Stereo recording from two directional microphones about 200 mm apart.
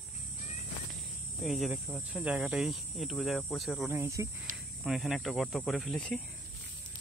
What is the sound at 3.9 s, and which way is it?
Speech, 15° right (ahead or behind).